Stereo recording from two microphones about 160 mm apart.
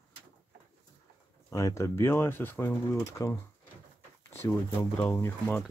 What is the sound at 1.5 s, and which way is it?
Speech, 20° left (ahead or behind).